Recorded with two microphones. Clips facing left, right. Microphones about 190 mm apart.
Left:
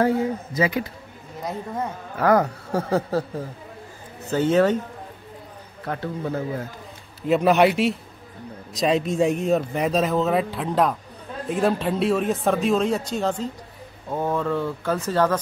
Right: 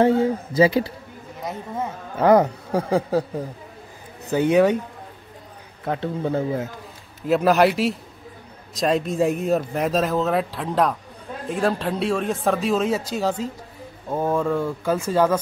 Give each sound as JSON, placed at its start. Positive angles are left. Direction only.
{"t": 0.0, "sound": "speech", "side_deg": -25}
{"t": 2.1, "sound": "speech", "side_deg": -20}
{"t": 5.9, "sound": "speech", "side_deg": -25}
{"t": 7.2, "sound": "speech", "side_deg": 0}